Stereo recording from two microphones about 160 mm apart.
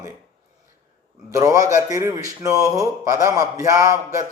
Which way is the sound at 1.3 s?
20° right (ahead or behind).